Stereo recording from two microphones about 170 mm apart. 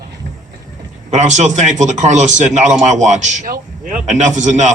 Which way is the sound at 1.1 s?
45° right (ahead or behind).